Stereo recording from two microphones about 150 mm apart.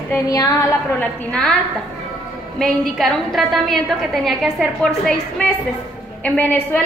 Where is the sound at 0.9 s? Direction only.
5° left (ahead or behind).